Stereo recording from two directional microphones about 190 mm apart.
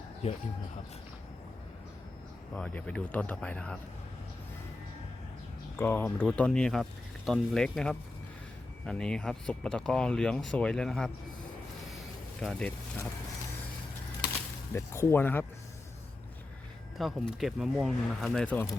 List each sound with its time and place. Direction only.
0.2 s speech: 35° left (ahead or behind)
2.5 s speech: 10° left (ahead or behind)
5.7 s speech: 10° left (ahead or behind)
12.4 s speech: 5° left (ahead or behind)
14.7 s speech: 15° left (ahead or behind)
17.0 s speech: centre (ahead or behind)